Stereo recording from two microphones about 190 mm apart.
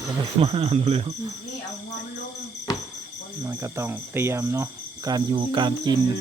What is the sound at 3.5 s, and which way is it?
Speech, 15° right (ahead or behind).